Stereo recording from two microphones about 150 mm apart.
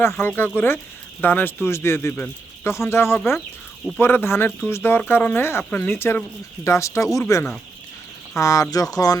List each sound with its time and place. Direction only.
0.0 s speech: 15° left (ahead or behind)